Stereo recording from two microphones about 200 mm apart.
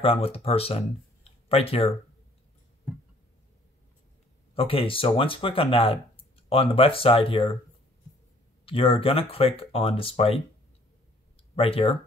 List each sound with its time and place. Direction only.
0.0 s speech: 30° left (ahead or behind)
4.6 s speech: 30° left (ahead or behind)
8.6 s speech: 25° left (ahead or behind)
11.5 s speech: 30° left (ahead or behind)